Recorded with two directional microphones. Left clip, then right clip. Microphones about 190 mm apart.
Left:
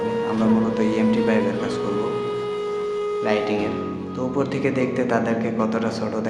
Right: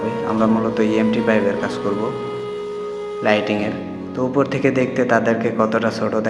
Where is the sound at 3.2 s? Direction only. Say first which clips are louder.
Right 7 dB; 25° right (ahead or behind).